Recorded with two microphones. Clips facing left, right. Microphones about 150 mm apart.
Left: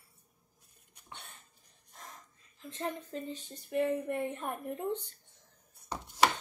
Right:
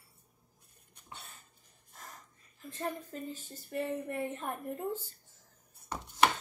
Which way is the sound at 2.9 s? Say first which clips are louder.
Left 1 dB; 5° right (ahead or behind).